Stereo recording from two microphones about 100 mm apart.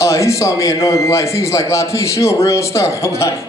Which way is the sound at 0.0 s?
30° left (ahead or behind).